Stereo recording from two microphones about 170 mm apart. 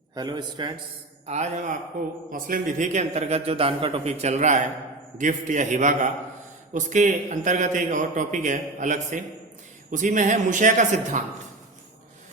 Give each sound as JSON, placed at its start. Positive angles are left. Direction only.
{"t": 0.1, "sound": "a man's voice", "side_deg": -25}
{"t": 1.3, "sound": "a man's voice", "side_deg": -40}